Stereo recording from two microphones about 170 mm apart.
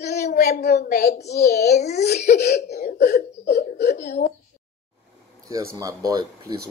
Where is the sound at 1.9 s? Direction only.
75° left (ahead or behind).